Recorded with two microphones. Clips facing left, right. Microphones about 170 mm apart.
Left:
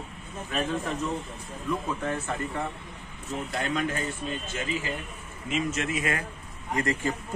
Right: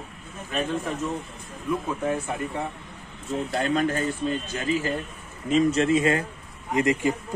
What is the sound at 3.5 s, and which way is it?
Speech, 40° right (ahead or behind).